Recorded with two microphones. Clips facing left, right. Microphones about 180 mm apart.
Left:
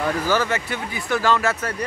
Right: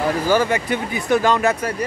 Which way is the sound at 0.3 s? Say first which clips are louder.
Right 4 dB; 15° right (ahead or behind).